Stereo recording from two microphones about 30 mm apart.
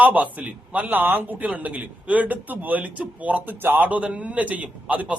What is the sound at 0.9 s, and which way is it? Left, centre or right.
Speech, right.